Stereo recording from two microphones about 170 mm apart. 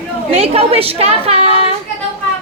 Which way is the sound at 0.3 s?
35° right (ahead or behind).